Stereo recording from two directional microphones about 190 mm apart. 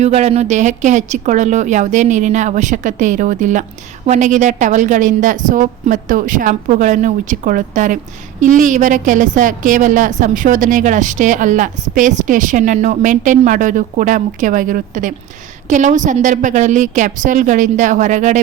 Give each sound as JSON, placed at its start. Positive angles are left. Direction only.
{"t": 0.0, "sound": "a woman's voice", "side_deg": -35}